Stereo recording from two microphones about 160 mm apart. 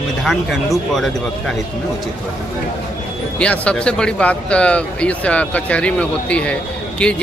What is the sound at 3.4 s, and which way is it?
Speech, 5° left (ahead or behind).